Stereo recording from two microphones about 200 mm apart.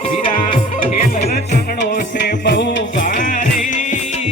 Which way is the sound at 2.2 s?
55° left (ahead or behind).